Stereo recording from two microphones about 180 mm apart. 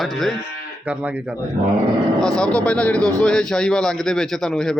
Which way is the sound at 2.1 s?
5° left (ahead or behind).